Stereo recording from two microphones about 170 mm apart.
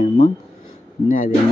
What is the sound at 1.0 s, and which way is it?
Speech, 55° left (ahead or behind).